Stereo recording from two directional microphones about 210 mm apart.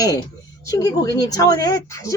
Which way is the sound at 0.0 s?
15° left (ahead or behind).